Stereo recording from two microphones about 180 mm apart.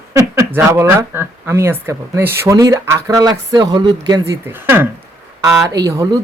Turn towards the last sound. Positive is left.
turn(degrees=-20)  # may be behind; listen again after turning